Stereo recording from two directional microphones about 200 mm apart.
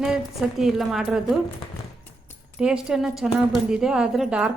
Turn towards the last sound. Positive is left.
turn(degrees=-5)  # may be behind; listen again after turning